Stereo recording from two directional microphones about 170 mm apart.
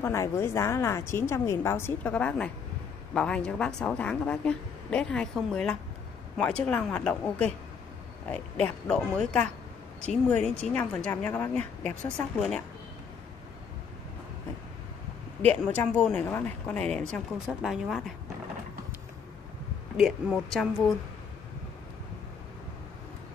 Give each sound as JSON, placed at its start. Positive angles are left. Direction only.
{"t": 0.0, "sound": "a woman's voice", "side_deg": 15}
{"t": 15.4, "sound": "a woman's voice", "side_deg": 10}
{"t": 20.0, "sound": "a woman's voice", "side_deg": 0}